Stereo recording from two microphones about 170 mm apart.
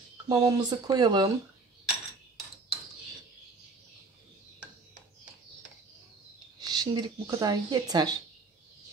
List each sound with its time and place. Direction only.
0.3 s speech: 25° right (ahead or behind)
6.6 s speech: 25° right (ahead or behind)